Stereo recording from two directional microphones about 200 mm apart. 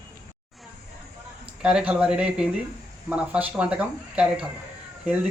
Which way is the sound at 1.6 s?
5° right (ahead or behind).